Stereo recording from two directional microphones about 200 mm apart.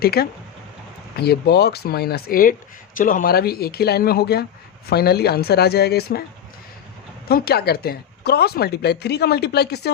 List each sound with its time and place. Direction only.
0.0 s speech: 50° left (ahead or behind)
7.3 s speech: 50° left (ahead or behind)